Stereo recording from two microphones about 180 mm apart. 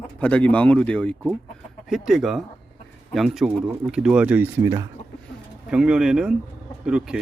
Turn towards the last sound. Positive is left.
turn(degrees=-5)  # may be behind; listen again after turning